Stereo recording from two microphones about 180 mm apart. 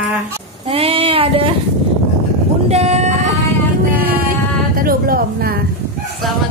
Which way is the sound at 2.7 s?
35° right (ahead or behind).